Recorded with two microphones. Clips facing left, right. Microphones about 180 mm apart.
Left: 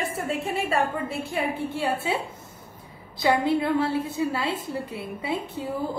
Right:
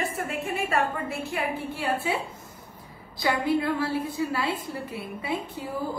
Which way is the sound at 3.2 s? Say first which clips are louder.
Left 3 dB; 25° left (ahead or behind).